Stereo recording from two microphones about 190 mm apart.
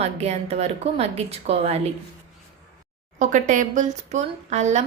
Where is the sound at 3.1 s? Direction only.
40° right (ahead or behind).